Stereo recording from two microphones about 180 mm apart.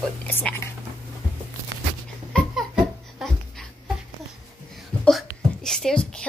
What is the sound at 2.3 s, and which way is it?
Babbling, centre (ahead or behind).